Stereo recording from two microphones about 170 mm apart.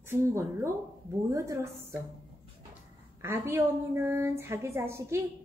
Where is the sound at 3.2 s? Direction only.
15° right (ahead or behind).